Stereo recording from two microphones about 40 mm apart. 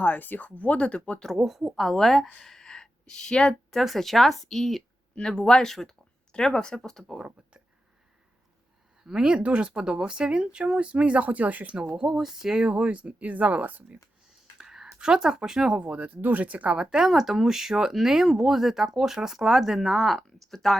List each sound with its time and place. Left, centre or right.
0.0 s speech: left
1.4 s speech: centre
2.4 s a sound: centre
3.8 s speech: centre
5.1 s speech: centre
9.0 s speech: centre
12.0 s speech: centre
12.7 s speech: right
14.6 s a sound: centre
15.0 s speech: centre
15.8 s speech: right
16.7 s speech: centre
20.2 s speech: centre